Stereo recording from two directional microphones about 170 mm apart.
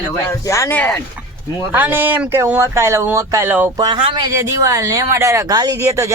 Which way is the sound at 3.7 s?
25° right (ahead or behind).